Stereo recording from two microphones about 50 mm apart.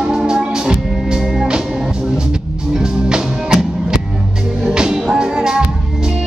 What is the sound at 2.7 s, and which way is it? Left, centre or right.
Music, centre.